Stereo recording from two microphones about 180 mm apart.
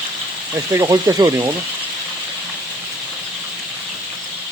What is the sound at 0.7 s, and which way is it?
Speech, 20° right (ahead or behind).